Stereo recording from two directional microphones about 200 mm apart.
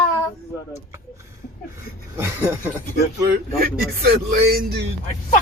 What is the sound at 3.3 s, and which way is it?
Speech, 45° right (ahead or behind).